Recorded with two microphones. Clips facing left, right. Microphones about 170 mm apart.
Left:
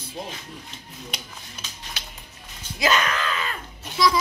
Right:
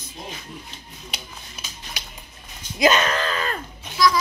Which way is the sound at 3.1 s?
35° right (ahead or behind).